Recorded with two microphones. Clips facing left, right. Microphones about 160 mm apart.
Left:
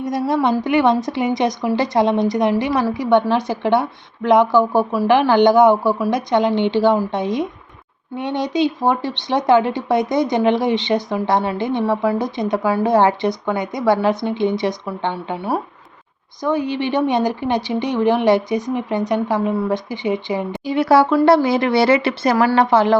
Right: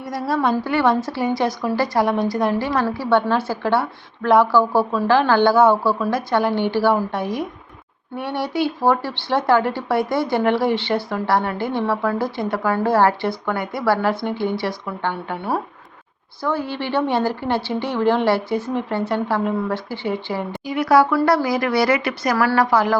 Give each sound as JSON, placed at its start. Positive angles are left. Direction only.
{"t": 0.0, "sound": "a woman's voice", "side_deg": 20}
{"t": 20.7, "sound": "speech", "side_deg": 25}